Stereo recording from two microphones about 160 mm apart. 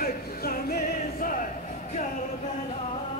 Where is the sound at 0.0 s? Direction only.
65° left (ahead or behind).